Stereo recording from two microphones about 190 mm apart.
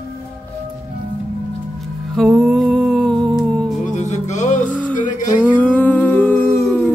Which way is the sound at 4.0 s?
40° left (ahead or behind).